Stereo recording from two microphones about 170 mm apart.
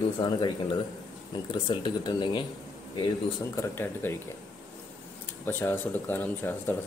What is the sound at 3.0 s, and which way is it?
Speech, 15° left (ahead or behind).